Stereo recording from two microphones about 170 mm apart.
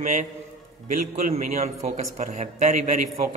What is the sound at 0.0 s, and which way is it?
Speech, 45° right (ahead or behind).